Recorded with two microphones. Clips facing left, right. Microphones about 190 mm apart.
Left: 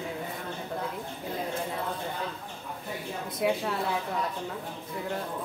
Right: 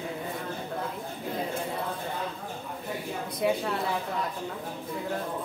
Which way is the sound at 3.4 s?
Centre (ahead or behind).